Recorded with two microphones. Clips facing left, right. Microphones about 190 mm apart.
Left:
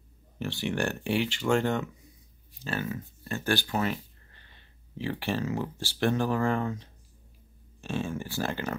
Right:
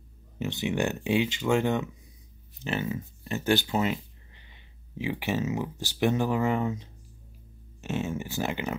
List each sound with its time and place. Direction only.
0.4 s speech: 20° right (ahead or behind)